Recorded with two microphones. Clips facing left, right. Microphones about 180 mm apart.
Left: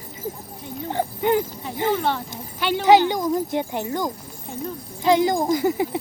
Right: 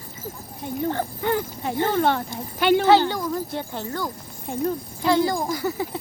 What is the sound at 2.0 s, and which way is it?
Speech, 50° right (ahead or behind).